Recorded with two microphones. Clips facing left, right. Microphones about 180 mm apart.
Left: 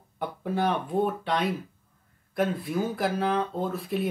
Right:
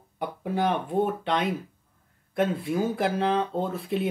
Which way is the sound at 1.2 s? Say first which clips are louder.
Right 1 dB; 20° right (ahead or behind).